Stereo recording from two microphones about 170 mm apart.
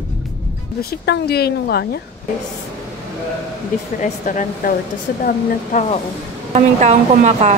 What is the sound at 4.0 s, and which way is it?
Speech, 50° left (ahead or behind).